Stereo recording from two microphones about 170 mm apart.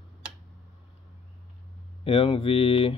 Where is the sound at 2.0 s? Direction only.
35° left (ahead or behind).